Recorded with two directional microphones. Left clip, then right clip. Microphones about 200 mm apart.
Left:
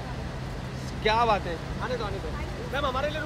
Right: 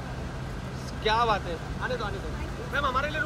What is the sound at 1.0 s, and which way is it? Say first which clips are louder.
Speech: left 1 dB; 45° left (ahead or behind).